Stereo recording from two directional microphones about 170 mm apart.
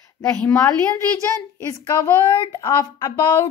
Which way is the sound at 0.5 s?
15° left (ahead or behind).